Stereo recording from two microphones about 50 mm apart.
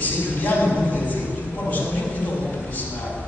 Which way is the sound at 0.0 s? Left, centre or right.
Left.